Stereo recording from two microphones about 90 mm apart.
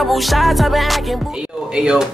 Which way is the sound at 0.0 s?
Centre (ahead or behind).